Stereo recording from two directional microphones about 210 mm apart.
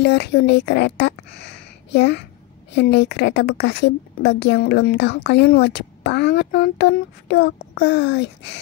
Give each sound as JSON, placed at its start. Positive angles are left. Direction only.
{"t": 0.0, "sound": "a woman's voice", "side_deg": 50}